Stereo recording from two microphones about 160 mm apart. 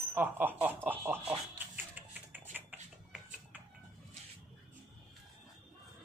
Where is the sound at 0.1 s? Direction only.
10° right (ahead or behind).